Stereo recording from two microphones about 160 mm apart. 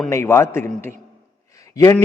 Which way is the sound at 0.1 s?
15° left (ahead or behind).